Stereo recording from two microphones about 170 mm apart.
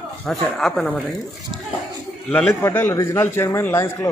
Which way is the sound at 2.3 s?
10° left (ahead or behind).